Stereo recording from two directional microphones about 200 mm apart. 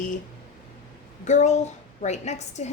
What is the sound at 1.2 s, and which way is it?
Speech, 35° left (ahead or behind).